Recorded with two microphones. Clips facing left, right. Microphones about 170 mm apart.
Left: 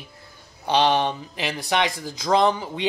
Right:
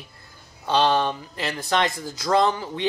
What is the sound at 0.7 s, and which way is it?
A man's voice, 15° left (ahead or behind).